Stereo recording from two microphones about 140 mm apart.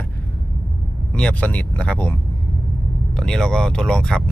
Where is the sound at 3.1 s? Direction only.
5° left (ahead or behind).